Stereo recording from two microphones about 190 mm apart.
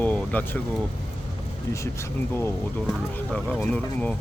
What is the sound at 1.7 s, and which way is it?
Speech, 15° left (ahead or behind).